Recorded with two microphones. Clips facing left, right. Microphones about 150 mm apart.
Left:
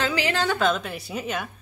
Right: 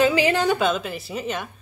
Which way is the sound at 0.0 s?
15° right (ahead or behind).